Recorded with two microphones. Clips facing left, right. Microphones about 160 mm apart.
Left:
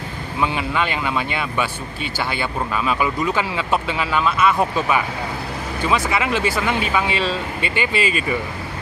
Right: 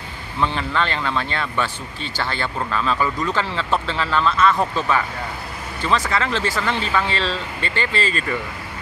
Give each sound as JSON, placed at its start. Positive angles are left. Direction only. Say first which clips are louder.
{"t": 0.4, "sound": "speech", "louder": "even", "side_deg": 10}